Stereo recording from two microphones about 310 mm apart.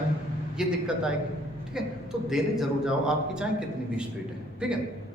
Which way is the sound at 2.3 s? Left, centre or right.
Centre.